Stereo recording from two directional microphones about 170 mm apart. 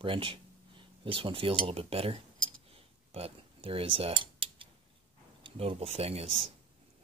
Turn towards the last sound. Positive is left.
turn(degrees=-35)  # may be behind; listen again after turning